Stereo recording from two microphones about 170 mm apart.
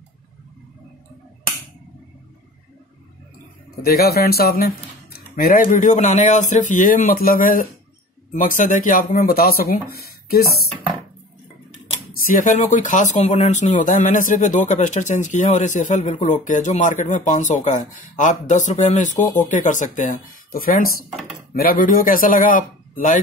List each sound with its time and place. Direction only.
3.8 s speech: 65° left (ahead or behind)
12.3 s speech: 50° left (ahead or behind)